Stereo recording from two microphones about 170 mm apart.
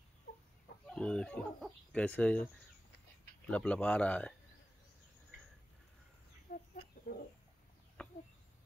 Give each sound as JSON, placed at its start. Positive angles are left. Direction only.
{"t": 0.8, "sound": "speech", "side_deg": 5}
{"t": 6.5, "sound": "chicken", "side_deg": 55}
{"t": 8.0, "sound": "bird", "side_deg": 5}